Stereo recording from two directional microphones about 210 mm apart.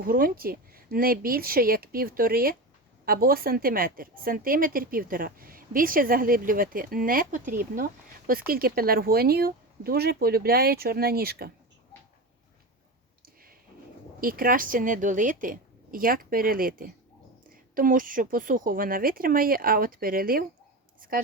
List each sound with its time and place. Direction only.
0.0 s a woman's voice: 45° right (ahead or behind)
13.2 s a sound: 45° right (ahead or behind)
14.2 s a woman's voice: 45° right (ahead or behind)